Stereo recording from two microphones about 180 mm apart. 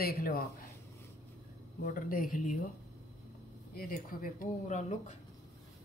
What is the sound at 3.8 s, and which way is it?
Speech, 50° left (ahead or behind).